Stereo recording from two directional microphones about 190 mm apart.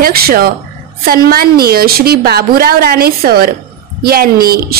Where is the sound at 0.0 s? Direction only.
50° right (ahead or behind).